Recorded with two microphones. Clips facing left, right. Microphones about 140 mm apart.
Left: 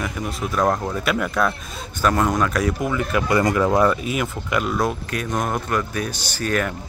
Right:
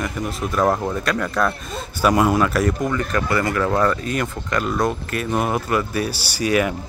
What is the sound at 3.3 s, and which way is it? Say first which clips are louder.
Speech: left 4 dB; 20° left (ahead or behind).